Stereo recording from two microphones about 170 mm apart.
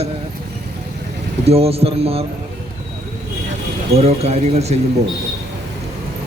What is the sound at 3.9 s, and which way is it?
Speech, 40° right (ahead or behind).